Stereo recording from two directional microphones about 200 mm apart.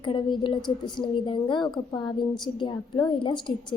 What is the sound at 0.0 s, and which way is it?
A woman's voice, 25° left (ahead or behind).